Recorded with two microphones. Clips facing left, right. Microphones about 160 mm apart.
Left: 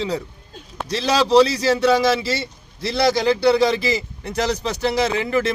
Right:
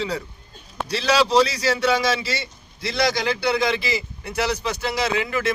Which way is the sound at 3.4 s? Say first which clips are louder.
Left 6 dB; 35° left (ahead or behind).